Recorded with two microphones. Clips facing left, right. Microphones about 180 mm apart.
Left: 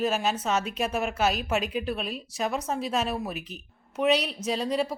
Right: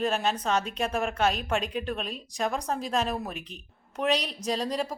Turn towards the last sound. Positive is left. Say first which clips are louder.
# left 2 dB
turn(degrees=0)  # may be behind; listen again after turning